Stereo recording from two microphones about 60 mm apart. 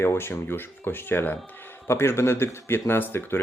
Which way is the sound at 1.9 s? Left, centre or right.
Left.